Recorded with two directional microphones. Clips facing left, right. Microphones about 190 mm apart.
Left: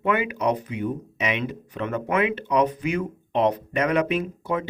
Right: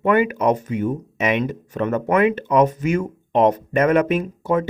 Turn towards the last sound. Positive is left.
turn(degrees=-45)  # may be behind; listen again after turning